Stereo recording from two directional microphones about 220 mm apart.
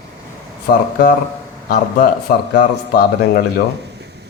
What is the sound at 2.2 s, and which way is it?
Speech, 45° left (ahead or behind).